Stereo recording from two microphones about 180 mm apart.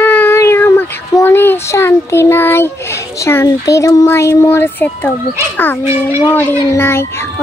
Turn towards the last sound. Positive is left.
turn(degrees=15)  # may be behind; listen again after turning